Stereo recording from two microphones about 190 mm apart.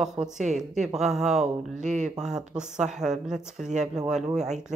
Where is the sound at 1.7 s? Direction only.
40° right (ahead or behind).